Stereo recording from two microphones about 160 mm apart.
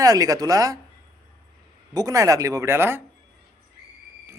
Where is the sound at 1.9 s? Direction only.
20° right (ahead or behind).